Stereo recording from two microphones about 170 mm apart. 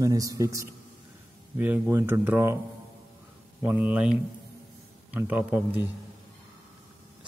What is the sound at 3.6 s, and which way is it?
Speech, 10° right (ahead or behind).